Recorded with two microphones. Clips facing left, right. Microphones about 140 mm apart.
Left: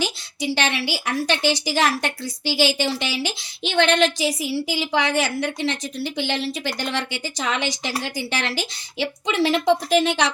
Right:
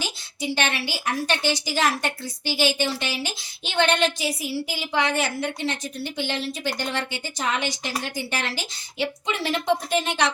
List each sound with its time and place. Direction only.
0.0 s a woman's voice: 85° left